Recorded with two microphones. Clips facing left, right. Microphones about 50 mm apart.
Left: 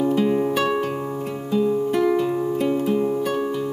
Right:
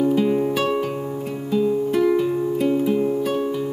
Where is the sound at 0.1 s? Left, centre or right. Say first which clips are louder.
Even; centre.